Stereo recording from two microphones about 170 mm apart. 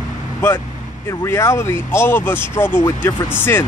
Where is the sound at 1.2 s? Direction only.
15° left (ahead or behind).